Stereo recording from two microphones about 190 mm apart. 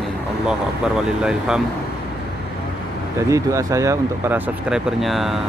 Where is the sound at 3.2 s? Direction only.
15° right (ahead or behind).